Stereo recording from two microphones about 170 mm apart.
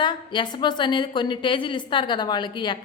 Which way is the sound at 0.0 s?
25° left (ahead or behind).